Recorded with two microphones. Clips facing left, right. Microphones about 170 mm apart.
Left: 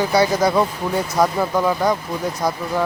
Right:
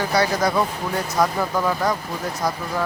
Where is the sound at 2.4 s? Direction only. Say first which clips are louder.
Left 2 dB; 25° left (ahead or behind).